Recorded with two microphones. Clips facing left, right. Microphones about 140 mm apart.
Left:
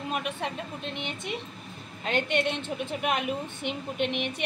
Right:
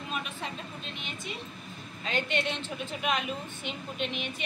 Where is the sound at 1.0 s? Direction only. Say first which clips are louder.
Left 4 dB; 65° left (ahead or behind).